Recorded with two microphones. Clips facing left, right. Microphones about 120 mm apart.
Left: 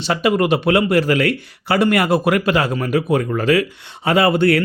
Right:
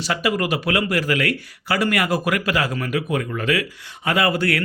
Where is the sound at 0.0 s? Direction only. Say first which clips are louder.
Left 5 dB; 25° left (ahead or behind).